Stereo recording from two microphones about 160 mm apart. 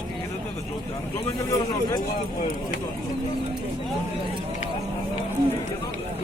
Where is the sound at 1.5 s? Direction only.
20° left (ahead or behind).